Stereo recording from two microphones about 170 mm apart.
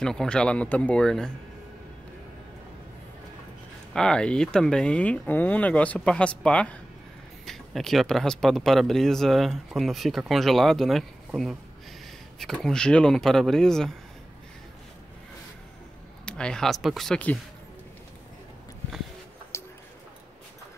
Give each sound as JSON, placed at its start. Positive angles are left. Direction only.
{"t": 0.0, "sound": "speech", "side_deg": 5}
{"t": 3.9, "sound": "speech", "side_deg": 5}
{"t": 16.3, "sound": "speech", "side_deg": 5}
{"t": 19.5, "sound": "a sound", "side_deg": 15}